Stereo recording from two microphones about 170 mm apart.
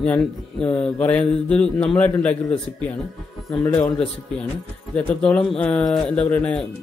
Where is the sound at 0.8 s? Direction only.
5° left (ahead or behind).